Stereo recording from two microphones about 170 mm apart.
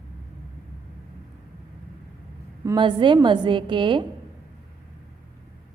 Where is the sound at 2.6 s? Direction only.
25° right (ahead or behind).